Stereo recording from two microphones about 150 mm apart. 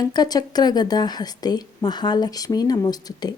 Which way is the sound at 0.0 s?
25° left (ahead or behind).